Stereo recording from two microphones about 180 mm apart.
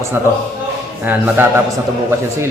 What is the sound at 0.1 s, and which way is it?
A man's voice, 15° right (ahead or behind).